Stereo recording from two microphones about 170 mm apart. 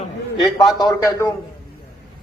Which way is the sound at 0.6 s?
25° left (ahead or behind).